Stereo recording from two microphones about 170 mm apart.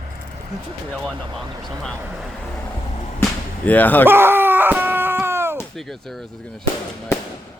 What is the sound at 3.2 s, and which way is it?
Whip, 10° left (ahead or behind).